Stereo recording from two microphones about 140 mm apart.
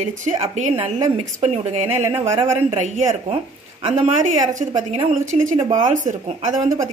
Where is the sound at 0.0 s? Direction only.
55° right (ahead or behind).